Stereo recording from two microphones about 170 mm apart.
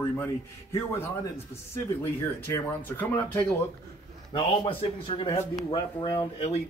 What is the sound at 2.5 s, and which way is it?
Speech, 10° left (ahead or behind).